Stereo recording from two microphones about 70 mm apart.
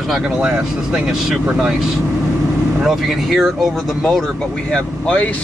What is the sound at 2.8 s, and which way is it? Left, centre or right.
Speech, centre.